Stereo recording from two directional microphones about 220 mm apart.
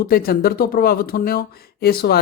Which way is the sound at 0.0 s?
45° left (ahead or behind).